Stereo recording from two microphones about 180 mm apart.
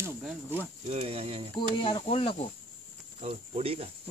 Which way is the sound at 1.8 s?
30° left (ahead or behind).